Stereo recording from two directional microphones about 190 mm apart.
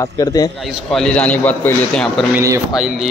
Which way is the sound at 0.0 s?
20° left (ahead or behind).